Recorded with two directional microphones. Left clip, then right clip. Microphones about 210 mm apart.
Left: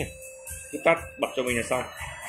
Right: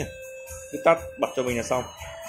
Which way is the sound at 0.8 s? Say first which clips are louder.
Right 2 dB; 10° right (ahead or behind).